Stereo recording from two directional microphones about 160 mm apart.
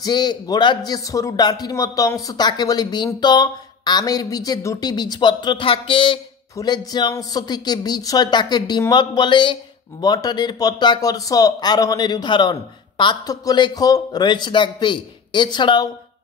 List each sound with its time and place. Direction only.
0.0 s a man's voice: 25° left (ahead or behind)